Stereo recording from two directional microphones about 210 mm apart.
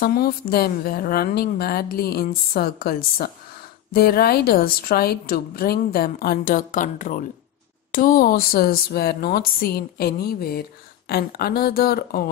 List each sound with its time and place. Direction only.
0.0 s a woman's voice: 45° left (ahead or behind)